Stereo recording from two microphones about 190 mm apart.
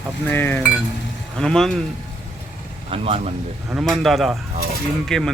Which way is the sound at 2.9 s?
30° right (ahead or behind).